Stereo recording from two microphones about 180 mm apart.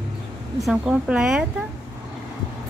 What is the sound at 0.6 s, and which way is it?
Speech, 5° right (ahead or behind).